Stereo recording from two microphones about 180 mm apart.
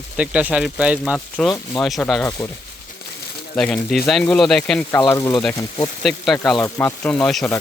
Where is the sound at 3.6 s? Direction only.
Centre (ahead or behind).